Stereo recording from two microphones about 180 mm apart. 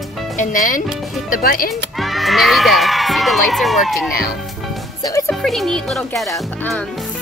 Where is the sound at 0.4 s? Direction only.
45° left (ahead or behind).